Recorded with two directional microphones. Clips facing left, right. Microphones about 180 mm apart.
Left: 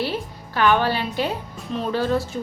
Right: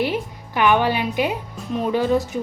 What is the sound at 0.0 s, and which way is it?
Music, 15° right (ahead or behind).